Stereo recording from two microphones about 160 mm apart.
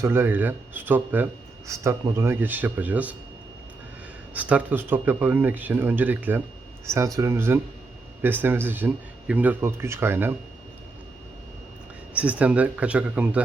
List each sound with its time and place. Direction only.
0.0 s speech: 15° right (ahead or behind)
4.4 s speech: 10° right (ahead or behind)
12.1 s speech: 10° right (ahead or behind)